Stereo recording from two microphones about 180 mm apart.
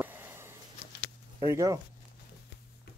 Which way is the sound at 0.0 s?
10° right (ahead or behind).